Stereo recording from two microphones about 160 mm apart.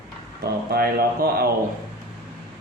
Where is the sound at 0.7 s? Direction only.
75° right (ahead or behind).